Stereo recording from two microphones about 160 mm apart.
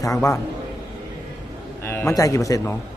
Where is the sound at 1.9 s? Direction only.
15° left (ahead or behind).